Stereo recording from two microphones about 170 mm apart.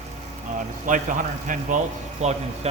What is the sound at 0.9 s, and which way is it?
A man's voice, 50° right (ahead or behind).